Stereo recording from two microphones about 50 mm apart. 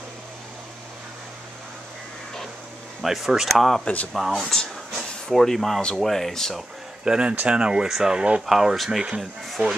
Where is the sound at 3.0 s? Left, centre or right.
Centre.